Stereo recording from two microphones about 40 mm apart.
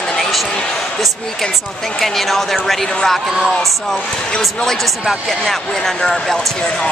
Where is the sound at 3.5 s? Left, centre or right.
Centre.